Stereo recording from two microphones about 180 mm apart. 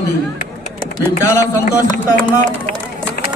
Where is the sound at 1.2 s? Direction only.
15° left (ahead or behind).